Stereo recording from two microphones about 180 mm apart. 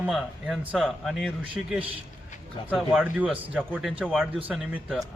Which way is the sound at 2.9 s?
5° right (ahead or behind).